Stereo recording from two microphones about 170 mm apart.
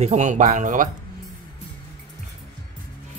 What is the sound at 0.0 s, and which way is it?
Speech, 45° right (ahead or behind).